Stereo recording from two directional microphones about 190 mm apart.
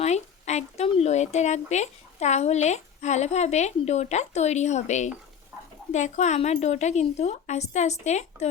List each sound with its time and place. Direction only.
0.0 s speech: 35° left (ahead or behind)